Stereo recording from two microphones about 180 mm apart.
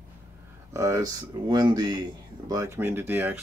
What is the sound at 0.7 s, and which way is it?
Speech, 15° right (ahead or behind).